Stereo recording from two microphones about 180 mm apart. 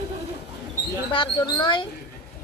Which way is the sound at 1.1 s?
25° left (ahead or behind).